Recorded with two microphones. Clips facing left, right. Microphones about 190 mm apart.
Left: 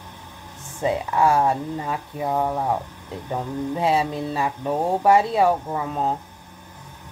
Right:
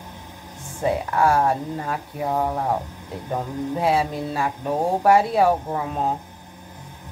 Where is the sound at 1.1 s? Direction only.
5° left (ahead or behind).